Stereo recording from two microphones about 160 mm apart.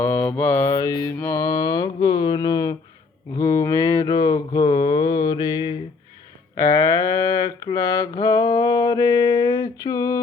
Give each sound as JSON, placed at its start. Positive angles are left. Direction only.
{"t": 0.0, "sound": "mantra", "side_deg": 15}